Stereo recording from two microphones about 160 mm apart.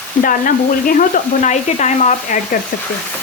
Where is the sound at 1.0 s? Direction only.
55° left (ahead or behind).